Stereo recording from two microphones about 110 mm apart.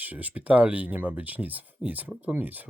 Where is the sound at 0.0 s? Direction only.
15° right (ahead or behind).